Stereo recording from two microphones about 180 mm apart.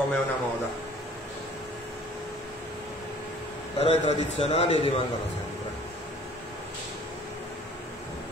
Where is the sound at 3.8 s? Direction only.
35° left (ahead or behind).